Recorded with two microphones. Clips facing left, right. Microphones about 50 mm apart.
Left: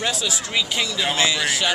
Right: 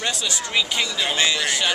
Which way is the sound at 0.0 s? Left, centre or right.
Centre.